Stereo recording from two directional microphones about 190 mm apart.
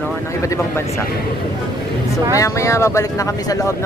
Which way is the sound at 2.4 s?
15° left (ahead or behind).